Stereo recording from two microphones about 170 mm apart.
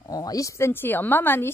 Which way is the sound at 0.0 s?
20° left (ahead or behind).